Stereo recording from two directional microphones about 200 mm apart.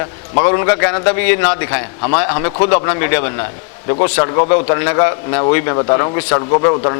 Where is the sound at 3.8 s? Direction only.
35° left (ahead or behind).